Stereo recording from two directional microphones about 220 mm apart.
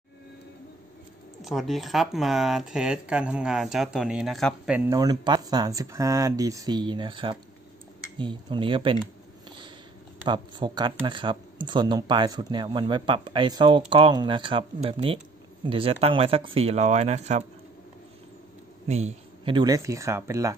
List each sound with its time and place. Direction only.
1.4 s speech: centre (ahead or behind); by 8.9 s 20° right (ahead or behind)
10.2 s speech: 20° right (ahead or behind)
18.9 s speech: 30° right (ahead or behind); by 20.5 s 15° right (ahead or behind)